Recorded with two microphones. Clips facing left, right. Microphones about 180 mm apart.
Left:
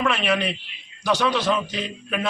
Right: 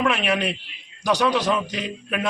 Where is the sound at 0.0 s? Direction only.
5° right (ahead or behind).